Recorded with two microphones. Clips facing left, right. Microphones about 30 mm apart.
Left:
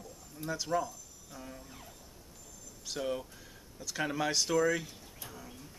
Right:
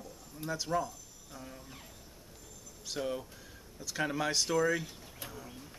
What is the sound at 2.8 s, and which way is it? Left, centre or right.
Speech, centre.